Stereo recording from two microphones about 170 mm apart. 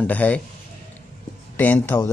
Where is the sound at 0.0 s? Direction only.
10° left (ahead or behind).